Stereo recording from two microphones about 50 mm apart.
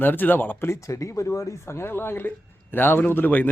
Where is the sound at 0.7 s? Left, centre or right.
Left.